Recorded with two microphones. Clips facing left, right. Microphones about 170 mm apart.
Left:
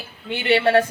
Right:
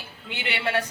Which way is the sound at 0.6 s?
50° left (ahead or behind).